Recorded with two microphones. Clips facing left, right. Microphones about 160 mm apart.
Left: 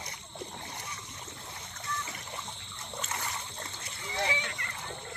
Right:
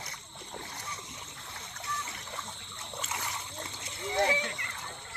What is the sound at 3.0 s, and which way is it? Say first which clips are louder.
Splash: left 1 dB; 5° right (ahead or behind).